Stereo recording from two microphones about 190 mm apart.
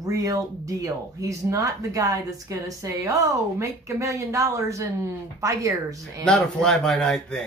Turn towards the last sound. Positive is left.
turn(degrees=0)  # may be behind; listen again after turning